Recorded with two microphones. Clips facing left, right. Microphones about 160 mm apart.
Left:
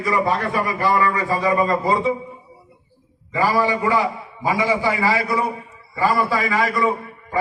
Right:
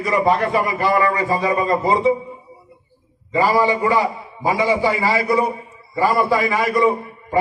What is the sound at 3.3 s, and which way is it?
A man's voice, 20° right (ahead or behind).